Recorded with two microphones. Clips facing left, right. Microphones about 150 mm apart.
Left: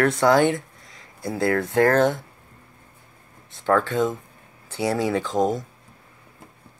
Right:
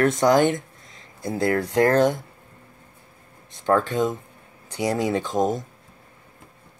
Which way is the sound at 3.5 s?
15° right (ahead or behind).